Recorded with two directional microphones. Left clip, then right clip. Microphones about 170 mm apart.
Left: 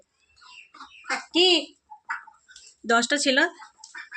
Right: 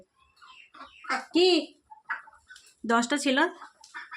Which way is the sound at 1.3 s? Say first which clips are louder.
Left 3 dB; 10° right (ahead or behind).